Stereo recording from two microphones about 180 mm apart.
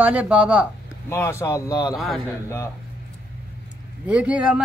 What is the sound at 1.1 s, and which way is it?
Speech, 15° left (ahead or behind).